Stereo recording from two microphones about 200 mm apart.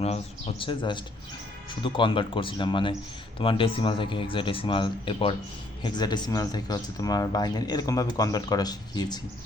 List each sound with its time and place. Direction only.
0.0 s speech: 30° left (ahead or behind)